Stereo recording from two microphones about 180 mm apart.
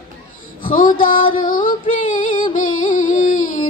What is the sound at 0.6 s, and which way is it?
Female singing, 50° left (ahead or behind).